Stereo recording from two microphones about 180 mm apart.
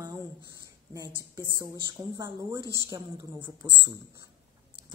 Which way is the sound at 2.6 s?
20° left (ahead or behind).